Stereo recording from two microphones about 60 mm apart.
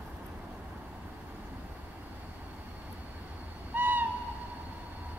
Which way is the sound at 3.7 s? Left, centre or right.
Right.